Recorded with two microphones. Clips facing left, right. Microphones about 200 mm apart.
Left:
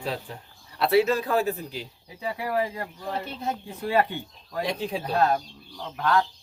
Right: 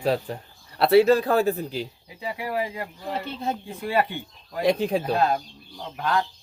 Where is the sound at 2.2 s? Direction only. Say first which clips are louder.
Left 1 dB; 15° right (ahead or behind).